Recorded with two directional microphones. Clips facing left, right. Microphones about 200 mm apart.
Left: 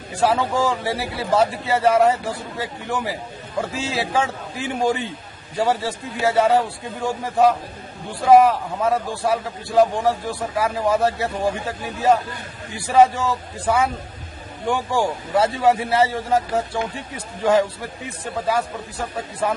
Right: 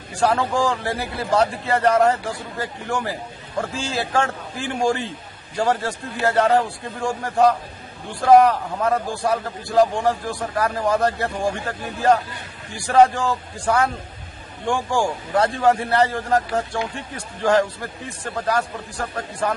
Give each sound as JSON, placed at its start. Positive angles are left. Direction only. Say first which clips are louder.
{"t": 0.2, "sound": "a man's voice", "louder": "even", "side_deg": 5}